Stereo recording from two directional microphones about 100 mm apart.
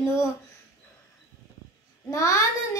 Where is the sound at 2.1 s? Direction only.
30° left (ahead or behind).